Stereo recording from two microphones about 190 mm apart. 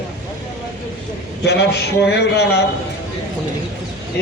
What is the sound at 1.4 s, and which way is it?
Speech, 60° left (ahead or behind).